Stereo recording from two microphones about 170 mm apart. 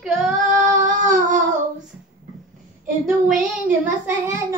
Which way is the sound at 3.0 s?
5° right (ahead or behind).